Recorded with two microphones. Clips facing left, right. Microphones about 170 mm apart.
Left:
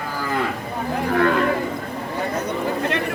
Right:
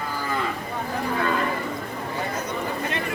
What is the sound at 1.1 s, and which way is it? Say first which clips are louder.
Cattle: left 7 dB; 65° left (ahead or behind).